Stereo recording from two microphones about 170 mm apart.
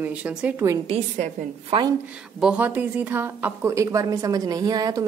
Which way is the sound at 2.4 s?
5° right (ahead or behind).